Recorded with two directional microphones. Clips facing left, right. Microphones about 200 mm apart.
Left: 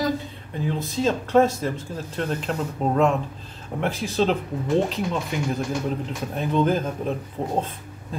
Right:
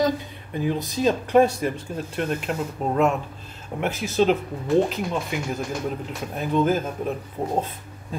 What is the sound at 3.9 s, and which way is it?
Speech, 30° left (ahead or behind).